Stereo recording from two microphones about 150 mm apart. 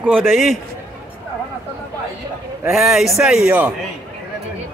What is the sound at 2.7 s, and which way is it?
Speech, centre (ahead or behind).